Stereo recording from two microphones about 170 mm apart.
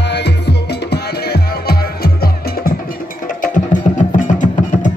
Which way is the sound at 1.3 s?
70° left (ahead or behind).